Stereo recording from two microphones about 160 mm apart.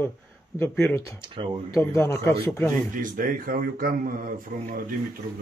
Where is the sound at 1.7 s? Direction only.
15° left (ahead or behind).